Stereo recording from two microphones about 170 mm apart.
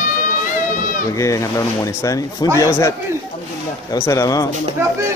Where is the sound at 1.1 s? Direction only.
20° left (ahead or behind).